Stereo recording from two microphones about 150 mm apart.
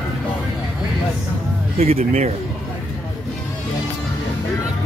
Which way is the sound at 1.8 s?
45° right (ahead or behind).